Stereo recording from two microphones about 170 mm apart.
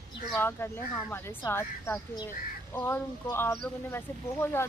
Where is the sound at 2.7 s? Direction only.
15° left (ahead or behind).